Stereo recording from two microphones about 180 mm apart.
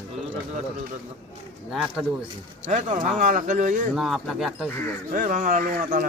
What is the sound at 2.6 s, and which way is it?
Speech, 45° right (ahead or behind).